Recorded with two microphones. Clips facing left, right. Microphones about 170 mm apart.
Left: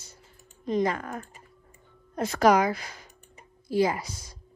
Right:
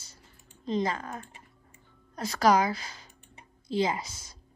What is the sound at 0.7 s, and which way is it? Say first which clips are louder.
Speech: left 3 dB; 25° right (ahead or behind).